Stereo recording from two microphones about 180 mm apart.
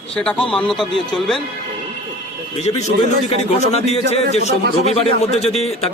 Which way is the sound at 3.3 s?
35° left (ahead or behind).